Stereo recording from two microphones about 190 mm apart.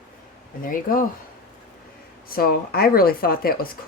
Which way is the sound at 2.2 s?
50° left (ahead or behind).